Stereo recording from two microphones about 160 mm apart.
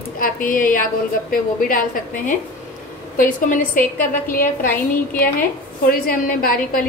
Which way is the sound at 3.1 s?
55° left (ahead or behind).